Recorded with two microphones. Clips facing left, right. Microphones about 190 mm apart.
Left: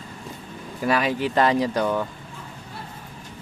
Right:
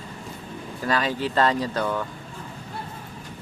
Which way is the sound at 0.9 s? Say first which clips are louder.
Left 3 dB; 15° left (ahead or behind).